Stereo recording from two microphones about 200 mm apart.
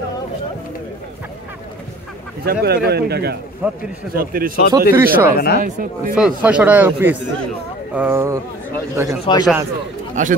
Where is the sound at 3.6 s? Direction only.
10° right (ahead or behind).